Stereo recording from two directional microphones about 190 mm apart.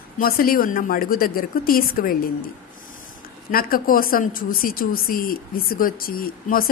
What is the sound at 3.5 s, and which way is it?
A woman's voice, 50° left (ahead or behind).